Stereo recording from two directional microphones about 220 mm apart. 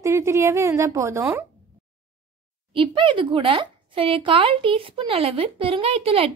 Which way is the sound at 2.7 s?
20° right (ahead or behind).